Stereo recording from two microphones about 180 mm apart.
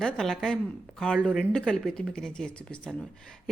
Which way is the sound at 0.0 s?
5° left (ahead or behind).